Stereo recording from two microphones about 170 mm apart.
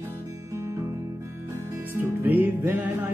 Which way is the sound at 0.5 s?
20° right (ahead or behind).